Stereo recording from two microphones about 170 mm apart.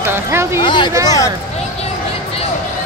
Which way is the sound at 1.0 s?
20° left (ahead or behind).